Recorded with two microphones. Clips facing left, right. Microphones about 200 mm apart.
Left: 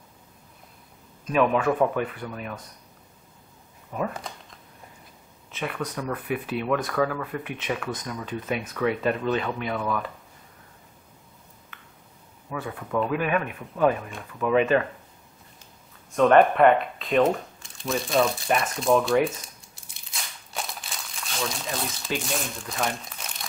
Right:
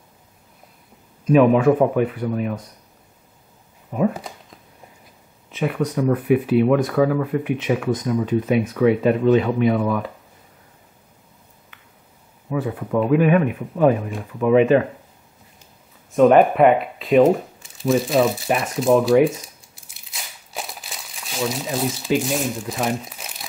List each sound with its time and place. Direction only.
1.2 s speech: 10° right (ahead or behind)
3.9 s speech: 10° right (ahead or behind)
5.5 s speech: 10° right (ahead or behind)
12.6 s speech: 20° right (ahead or behind)
16.2 s speech: 5° right (ahead or behind)
19.0 s crumpling: 5° right (ahead or behind)
22.4 s speech: 5° right (ahead or behind)